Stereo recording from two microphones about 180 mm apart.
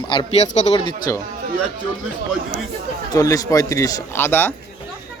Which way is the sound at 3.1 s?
20° left (ahead or behind).